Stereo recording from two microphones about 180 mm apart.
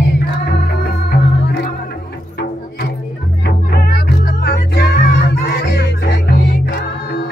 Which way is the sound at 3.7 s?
55° left (ahead or behind).